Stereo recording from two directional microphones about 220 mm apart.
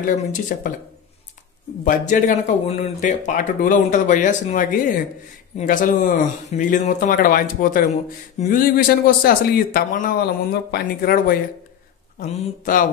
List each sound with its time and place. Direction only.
0.3 s speech: 35° left (ahead or behind)
1.9 s speech: 35° left (ahead or behind)